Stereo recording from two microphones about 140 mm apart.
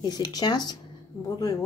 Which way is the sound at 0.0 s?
30° left (ahead or behind).